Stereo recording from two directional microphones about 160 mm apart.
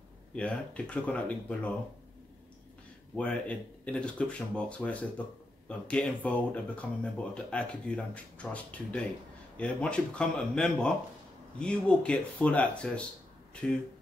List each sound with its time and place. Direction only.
0.3 s speech: 5° left (ahead or behind)
3.2 s speech: 10° left (ahead or behind)